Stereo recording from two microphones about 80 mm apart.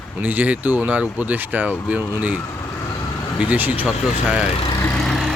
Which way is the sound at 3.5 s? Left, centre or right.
Right.